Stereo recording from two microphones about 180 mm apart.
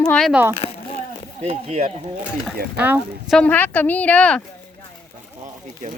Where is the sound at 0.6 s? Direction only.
35° left (ahead or behind).